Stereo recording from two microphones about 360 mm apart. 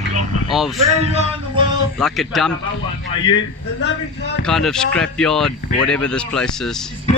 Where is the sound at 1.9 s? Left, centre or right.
Centre.